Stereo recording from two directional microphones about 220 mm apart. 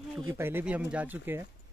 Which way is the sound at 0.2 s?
10° right (ahead or behind).